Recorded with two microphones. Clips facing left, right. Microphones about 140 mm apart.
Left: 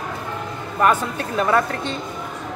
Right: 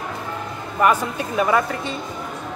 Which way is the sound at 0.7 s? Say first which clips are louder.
Even; 10° right (ahead or behind).